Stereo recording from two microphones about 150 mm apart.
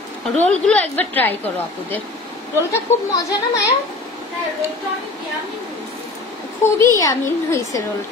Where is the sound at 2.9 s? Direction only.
15° left (ahead or behind).